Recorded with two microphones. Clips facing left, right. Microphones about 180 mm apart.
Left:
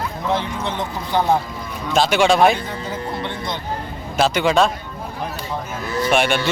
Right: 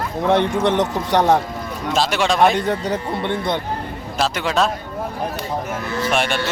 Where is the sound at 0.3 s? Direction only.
70° right (ahead or behind).